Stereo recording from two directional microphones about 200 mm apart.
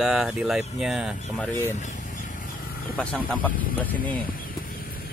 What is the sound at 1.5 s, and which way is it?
Speech, 10° left (ahead or behind).